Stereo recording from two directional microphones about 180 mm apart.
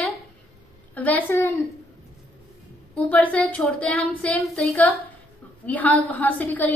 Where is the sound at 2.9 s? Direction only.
5° left (ahead or behind).